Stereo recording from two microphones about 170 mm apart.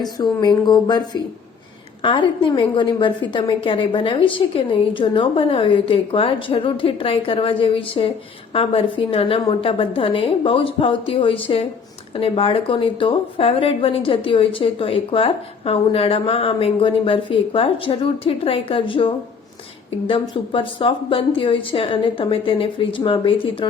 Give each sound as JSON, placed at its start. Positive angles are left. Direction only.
{"t": 0.0, "sound": "a woman's voice", "side_deg": 25}
{"t": 20.3, "sound": "a woman's voice", "side_deg": 30}